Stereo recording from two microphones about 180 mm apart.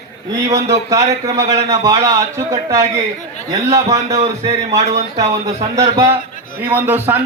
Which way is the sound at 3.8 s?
35° right (ahead or behind).